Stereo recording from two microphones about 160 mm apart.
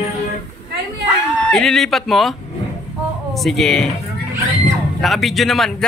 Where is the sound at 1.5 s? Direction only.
5° left (ahead or behind).